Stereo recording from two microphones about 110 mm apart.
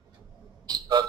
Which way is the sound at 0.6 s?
40° right (ahead or behind).